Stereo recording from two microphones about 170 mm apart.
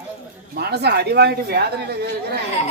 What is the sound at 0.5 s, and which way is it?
A man's voice, 70° right (ahead or behind).